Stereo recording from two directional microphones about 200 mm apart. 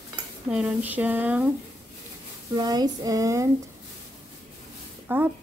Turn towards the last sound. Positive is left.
turn(degrees=-10)  # may be behind; listen again after turning